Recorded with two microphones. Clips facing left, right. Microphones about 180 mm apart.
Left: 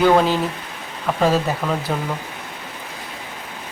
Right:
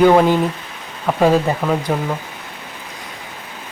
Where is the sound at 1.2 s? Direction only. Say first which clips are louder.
Right 4 dB; 15° right (ahead or behind).